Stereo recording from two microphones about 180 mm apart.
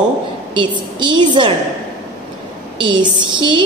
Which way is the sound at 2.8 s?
25° right (ahead or behind).